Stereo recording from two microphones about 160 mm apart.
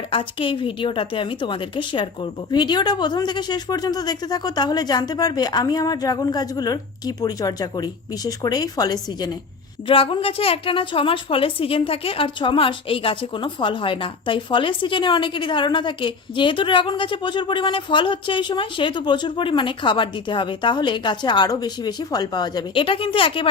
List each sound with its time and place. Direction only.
0.1 s a woman's voice: 35° left (ahead or behind)